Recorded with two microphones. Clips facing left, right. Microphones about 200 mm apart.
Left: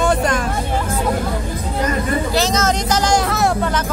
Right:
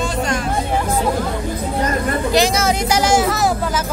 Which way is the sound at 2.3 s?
10° right (ahead or behind).